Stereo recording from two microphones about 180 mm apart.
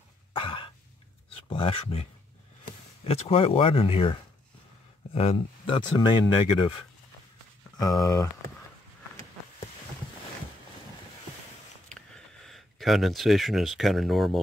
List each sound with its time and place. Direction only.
0.3 s cough: 30° left (ahead or behind)
1.3 s speech: 30° left (ahead or behind)
7.8 s speech: 20° left (ahead or behind)
12.4 s speech: centre (ahead or behind)